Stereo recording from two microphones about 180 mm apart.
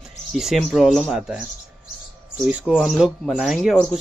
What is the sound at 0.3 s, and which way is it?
Speech, centre (ahead or behind).